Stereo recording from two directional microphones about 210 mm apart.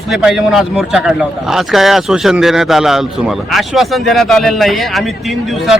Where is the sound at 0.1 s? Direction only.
Centre (ahead or behind).